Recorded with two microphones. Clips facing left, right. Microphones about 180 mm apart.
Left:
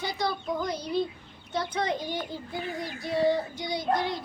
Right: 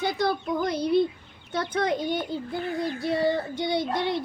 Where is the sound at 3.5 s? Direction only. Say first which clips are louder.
Right 2 dB; 60° right (ahead or behind).